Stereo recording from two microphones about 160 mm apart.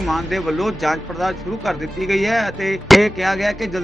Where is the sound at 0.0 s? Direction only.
Centre (ahead or behind).